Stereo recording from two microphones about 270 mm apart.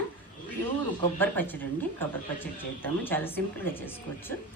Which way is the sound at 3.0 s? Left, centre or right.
Centre.